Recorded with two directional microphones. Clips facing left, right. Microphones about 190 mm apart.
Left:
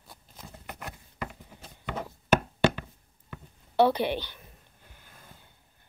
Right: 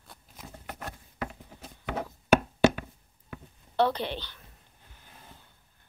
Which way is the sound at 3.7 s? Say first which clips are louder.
Left 4 dB; 10° left (ahead or behind).